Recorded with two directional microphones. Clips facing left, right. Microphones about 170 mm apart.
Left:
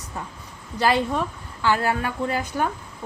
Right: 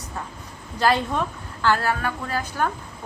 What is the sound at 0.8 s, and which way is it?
Speech, 10° left (ahead or behind).